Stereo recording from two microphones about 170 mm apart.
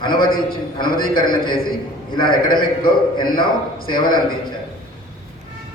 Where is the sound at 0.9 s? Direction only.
25° left (ahead or behind).